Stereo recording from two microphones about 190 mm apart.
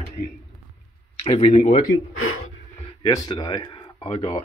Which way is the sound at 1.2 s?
30° left (ahead or behind).